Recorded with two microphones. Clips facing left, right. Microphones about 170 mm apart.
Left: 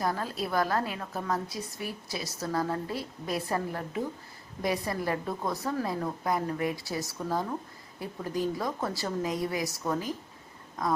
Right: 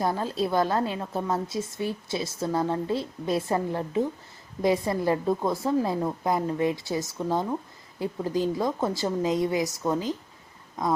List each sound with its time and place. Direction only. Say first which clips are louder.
0.0 s a woman's voice: right 5 dB; 25° right (ahead or behind)